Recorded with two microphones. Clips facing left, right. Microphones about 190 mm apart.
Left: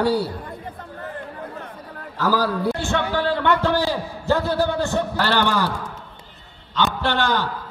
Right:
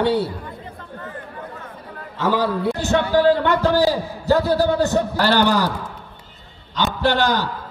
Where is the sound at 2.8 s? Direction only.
40° right (ahead or behind).